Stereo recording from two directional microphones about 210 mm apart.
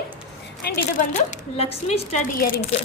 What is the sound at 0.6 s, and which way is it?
Speech, 50° left (ahead or behind).